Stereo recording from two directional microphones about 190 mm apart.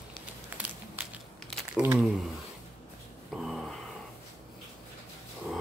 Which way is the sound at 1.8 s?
10° right (ahead or behind).